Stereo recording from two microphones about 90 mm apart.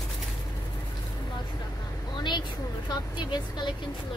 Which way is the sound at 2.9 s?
50° left (ahead or behind).